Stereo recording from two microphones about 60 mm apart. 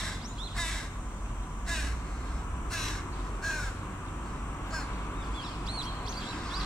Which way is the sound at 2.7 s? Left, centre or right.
Centre.